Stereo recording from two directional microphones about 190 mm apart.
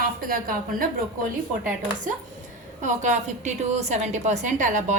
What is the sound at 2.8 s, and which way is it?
A woman's voice, 40° right (ahead or behind).